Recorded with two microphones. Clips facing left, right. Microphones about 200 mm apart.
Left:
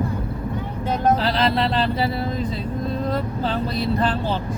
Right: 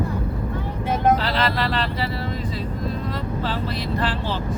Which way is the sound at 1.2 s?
25° left (ahead or behind).